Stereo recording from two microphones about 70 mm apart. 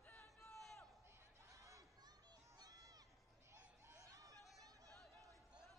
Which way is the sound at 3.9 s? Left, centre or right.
Right.